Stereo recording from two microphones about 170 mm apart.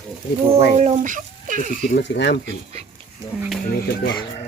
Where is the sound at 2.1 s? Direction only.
90° left.